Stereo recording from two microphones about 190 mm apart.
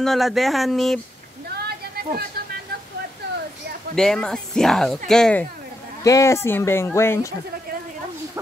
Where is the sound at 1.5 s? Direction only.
55° right (ahead or behind).